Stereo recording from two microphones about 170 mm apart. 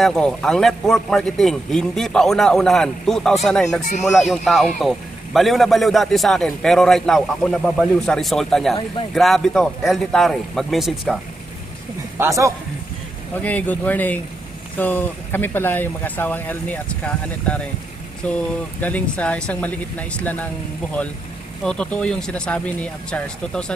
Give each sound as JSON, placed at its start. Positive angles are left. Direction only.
{"t": 0.0, "sound": "a man's voice", "side_deg": 5}
{"t": 12.2, "sound": "a man's voice", "side_deg": -20}
{"t": 13.3, "sound": "speech", "side_deg": 10}
{"t": 21.6, "sound": "a man's voice", "side_deg": 5}